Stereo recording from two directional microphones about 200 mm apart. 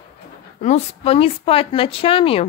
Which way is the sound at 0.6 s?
35° left (ahead or behind).